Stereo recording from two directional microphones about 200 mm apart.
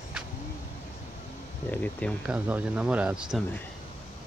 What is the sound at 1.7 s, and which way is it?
Speech, 5° left (ahead or behind).